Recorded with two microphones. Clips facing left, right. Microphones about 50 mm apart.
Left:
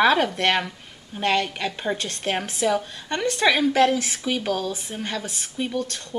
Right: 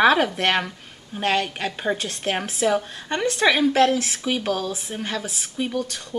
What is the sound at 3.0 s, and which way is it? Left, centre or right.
Speech, right.